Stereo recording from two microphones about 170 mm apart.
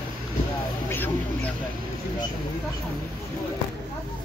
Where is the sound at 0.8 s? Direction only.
10° left (ahead or behind).